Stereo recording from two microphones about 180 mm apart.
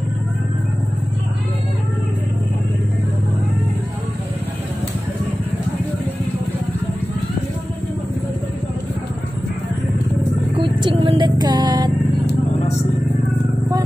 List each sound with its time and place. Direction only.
10.5 s music: 25° right (ahead or behind)